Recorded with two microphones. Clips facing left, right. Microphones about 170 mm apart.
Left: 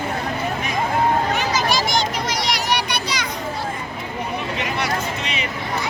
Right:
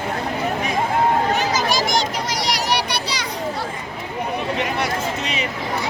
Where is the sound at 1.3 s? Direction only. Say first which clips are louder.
Right 1 dB; 45° right (ahead or behind).